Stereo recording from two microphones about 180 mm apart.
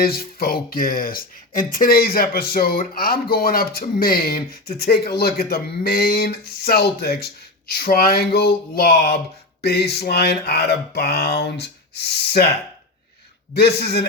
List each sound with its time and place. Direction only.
0.0 s speech: 55° left (ahead or behind)
13.5 s speech: 65° left (ahead or behind)